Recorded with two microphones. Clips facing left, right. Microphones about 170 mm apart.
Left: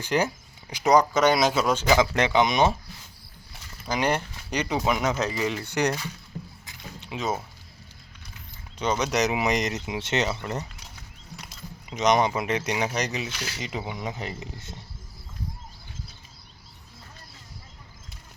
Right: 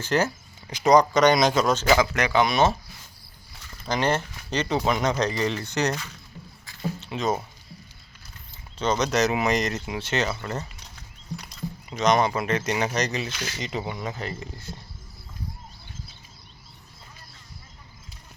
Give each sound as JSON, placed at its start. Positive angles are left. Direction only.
{"t": 0.0, "sound": "speech", "side_deg": 15}
{"t": 2.0, "sound": "speech", "side_deg": 25}
{"t": 3.8, "sound": "speech", "side_deg": 10}
{"t": 6.3, "sound": "rowboat", "side_deg": 40}
{"t": 6.7, "sound": "a sound", "side_deg": 10}
{"t": 8.8, "sound": "speech", "side_deg": 10}
{"t": 11.3, "sound": "a sound", "side_deg": 5}
{"t": 11.9, "sound": "speech", "side_deg": 15}